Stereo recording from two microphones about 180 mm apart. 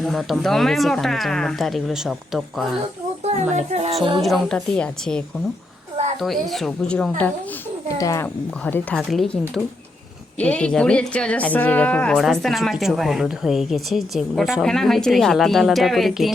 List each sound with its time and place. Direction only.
0.0 s speech: centre (ahead or behind)
3.5 s speech: 35° right (ahead or behind)
4.2 s speech: centre (ahead or behind)
7.9 s speech: 20° left (ahead or behind); by 16.3 s centre (ahead or behind)